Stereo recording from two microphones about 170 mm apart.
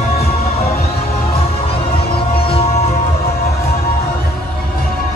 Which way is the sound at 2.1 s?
30° left (ahead or behind).